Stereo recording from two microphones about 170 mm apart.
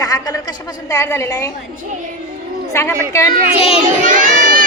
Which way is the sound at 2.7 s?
15° left (ahead or behind).